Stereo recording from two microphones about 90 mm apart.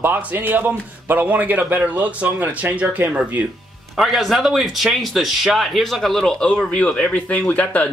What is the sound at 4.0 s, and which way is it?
Speech, centre (ahead or behind).